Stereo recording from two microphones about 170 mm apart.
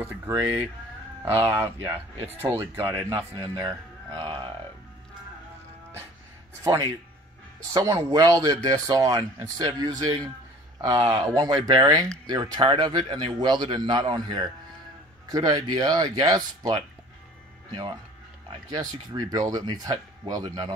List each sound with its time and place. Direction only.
0.0 s a man's voice: 15° right (ahead or behind)
6.6 s a man's voice: 20° right (ahead or behind)